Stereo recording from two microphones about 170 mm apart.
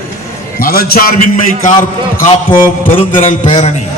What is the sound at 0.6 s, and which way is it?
A man's voice, 60° left (ahead or behind).